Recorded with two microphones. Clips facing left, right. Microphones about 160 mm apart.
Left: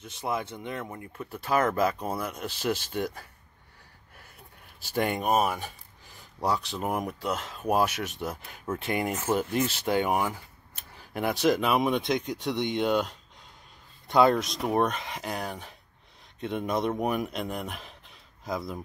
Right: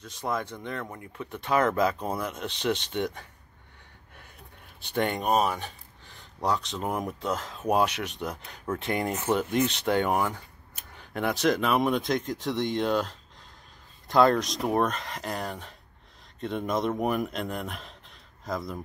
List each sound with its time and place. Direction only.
0.2 s speech: 10° left (ahead or behind)
4.8 s speech: 5° left (ahead or behind)
9.1 s speech: 5° left (ahead or behind)